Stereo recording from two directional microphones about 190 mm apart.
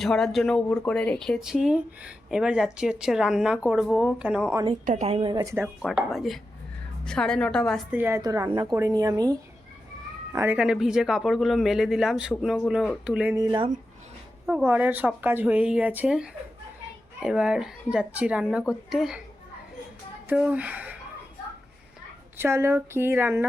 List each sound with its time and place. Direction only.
0.0 s speech: centre (ahead or behind)
4.9 s speech: 35° right (ahead or behind); by 5.7 s 15° right (ahead or behind)
5.8 s speech: centre (ahead or behind)
7.9 s speech: 15° right (ahead or behind)
10.3 s speech: 10° right (ahead or behind)
13.3 s speech: 20° right (ahead or behind); by 19.2 s centre (ahead or behind)
20.2 s speech: 5° right (ahead or behind)
22.4 s speech: 15° right (ahead or behind)